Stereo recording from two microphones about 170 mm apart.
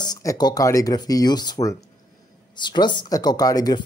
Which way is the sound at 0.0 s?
20° left (ahead or behind).